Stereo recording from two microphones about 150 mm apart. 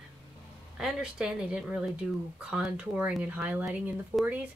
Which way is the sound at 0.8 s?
5° right (ahead or behind).